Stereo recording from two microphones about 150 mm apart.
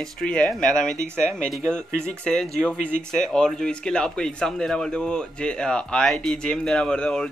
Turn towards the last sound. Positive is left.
turn(degrees=5)  # may be behind; listen again after turning